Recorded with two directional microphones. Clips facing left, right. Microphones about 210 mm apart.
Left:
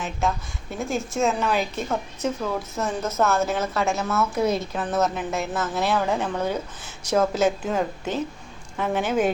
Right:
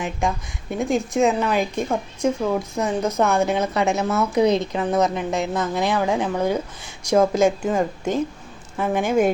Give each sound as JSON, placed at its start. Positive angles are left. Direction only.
{"t": 0.0, "sound": "a woman's voice", "side_deg": -15}